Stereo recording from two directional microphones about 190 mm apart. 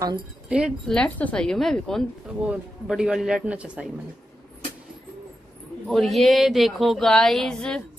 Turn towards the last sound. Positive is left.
turn(degrees=5)  # may be behind; listen again after turning